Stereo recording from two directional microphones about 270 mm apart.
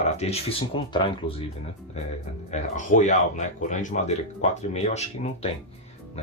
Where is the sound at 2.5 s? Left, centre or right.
Left.